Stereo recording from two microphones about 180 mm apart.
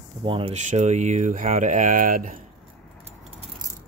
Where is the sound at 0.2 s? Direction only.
30° right (ahead or behind); by 2.4 s 50° right (ahead or behind).